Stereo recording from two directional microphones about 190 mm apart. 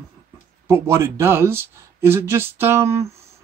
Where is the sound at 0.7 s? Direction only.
15° right (ahead or behind).